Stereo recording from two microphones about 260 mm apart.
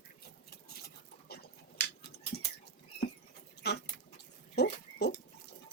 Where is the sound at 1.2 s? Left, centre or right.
Left.